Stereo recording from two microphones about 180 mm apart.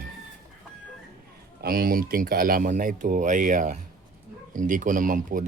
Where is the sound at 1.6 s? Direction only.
55° right (ahead or behind).